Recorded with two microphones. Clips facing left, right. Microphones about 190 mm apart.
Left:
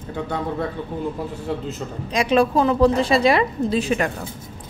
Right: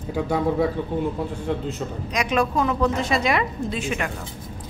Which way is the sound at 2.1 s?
30° left (ahead or behind).